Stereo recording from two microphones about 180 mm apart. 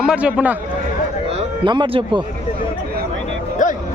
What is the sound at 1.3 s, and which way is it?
Speech, 30° right (ahead or behind).